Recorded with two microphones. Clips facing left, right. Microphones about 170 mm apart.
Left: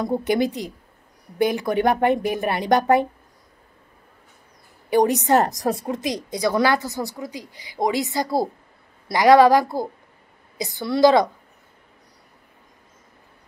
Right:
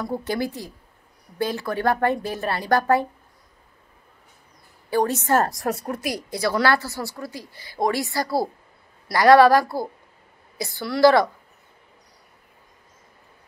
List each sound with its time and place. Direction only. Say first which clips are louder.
0.0 s a woman's voice: left 5 dB; 20° left (ahead or behind)
4.8 s a woman's voice: left 4 dB; 15° left (ahead or behind)
5.5 s a woman's voice: left 3 dB; 40° left (ahead or behind)
5.9 s a woman's voice: left 2 dB; 20° left (ahead or behind)